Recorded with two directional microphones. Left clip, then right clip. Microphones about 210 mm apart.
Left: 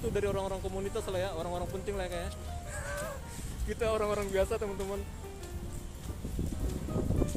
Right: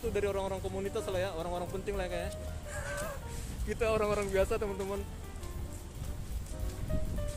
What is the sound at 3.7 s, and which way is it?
Speech, 10° right (ahead or behind).